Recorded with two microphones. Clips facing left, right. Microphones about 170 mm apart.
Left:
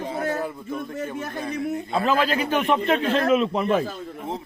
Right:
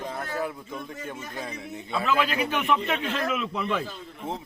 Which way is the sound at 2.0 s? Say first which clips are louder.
Left 3 dB; 35° left (ahead or behind).